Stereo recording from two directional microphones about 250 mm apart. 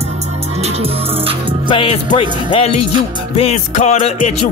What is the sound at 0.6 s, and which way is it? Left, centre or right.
Music, right.